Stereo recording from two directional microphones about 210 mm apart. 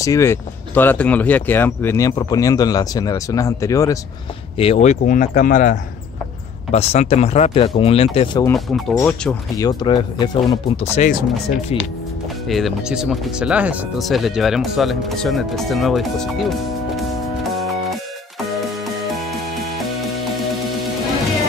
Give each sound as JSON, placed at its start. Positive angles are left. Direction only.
{"t": 0.0, "sound": "speech", "side_deg": 15}
{"t": 4.6, "sound": "speech", "side_deg": 30}
{"t": 8.5, "sound": "speech", "side_deg": 0}
{"t": 9.6, "sound": "speech", "side_deg": 20}
{"t": 12.4, "sound": "speech", "side_deg": 0}
{"t": 19.0, "sound": "music", "side_deg": 0}